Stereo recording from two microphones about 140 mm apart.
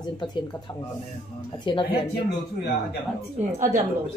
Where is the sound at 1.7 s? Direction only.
35° left (ahead or behind).